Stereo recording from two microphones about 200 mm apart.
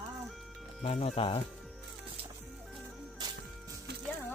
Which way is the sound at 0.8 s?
30° left (ahead or behind).